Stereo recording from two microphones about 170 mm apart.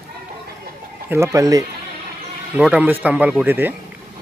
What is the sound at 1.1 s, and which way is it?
Speech, 20° right (ahead or behind).